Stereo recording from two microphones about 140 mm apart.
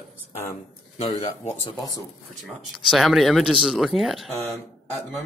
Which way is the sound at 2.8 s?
Centre (ahead or behind).